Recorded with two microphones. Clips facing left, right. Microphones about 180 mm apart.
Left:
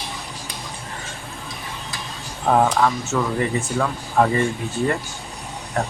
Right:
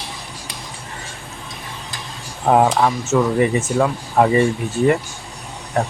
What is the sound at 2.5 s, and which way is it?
Speech, 20° right (ahead or behind).